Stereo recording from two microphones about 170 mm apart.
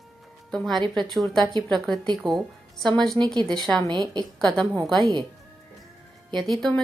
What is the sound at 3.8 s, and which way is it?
A woman's voice, 25° right (ahead or behind).